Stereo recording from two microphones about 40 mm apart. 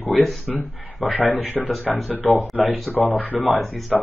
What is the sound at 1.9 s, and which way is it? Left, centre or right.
Speech, centre.